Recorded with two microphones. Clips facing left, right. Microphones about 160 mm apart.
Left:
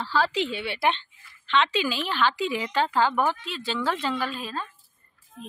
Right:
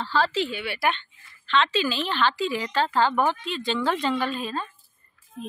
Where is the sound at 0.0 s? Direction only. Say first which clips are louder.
Right 1 dB; 10° left (ahead or behind).